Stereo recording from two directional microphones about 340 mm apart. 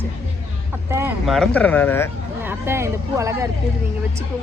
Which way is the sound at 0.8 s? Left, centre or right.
Centre.